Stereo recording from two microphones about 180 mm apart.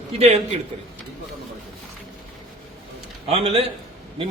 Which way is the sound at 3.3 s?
35° right (ahead or behind).